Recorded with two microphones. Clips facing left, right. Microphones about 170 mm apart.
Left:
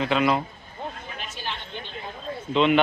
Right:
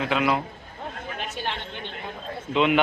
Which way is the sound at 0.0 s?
5° right (ahead or behind).